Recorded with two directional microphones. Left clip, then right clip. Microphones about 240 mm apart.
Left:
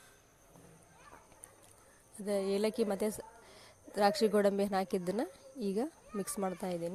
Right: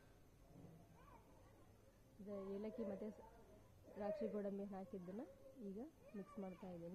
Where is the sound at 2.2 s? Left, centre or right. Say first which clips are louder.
Left 18 dB; left.